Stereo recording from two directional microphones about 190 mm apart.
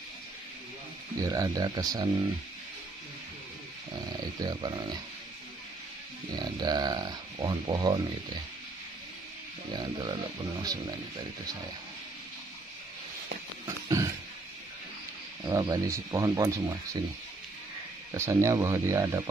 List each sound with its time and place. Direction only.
1.2 s speech: 20° right (ahead or behind)
4.4 s speech: 20° right (ahead or behind)
6.3 s speech: 20° right (ahead or behind)
9.8 s speech: 25° right (ahead or behind)
13.7 s a sound: 15° right (ahead or behind)
15.4 s speech: 20° right (ahead or behind)
18.1 s speech: 15° right (ahead or behind)